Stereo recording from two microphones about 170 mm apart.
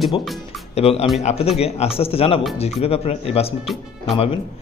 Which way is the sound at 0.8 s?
35° left (ahead or behind).